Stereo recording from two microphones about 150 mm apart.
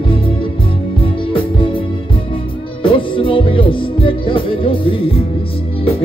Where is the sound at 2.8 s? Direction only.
35° left (ahead or behind).